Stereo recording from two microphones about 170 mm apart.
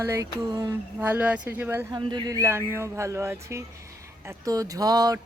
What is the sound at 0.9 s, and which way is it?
Speech, 10° right (ahead or behind).